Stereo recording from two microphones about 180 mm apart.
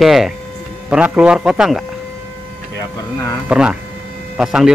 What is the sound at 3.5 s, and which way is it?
A man's voice, 5° right (ahead or behind).